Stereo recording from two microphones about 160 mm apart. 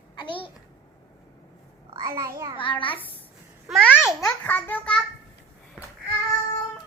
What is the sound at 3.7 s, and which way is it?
Babbling, centre (ahead or behind).